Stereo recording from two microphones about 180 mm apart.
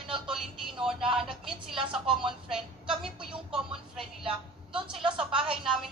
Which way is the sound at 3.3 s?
5° right (ahead or behind).